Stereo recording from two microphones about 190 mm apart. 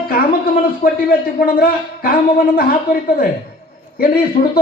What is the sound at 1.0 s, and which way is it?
Speech, 50° left (ahead or behind).